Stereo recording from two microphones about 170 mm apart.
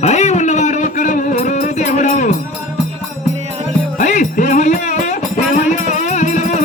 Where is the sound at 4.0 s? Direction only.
50° left (ahead or behind).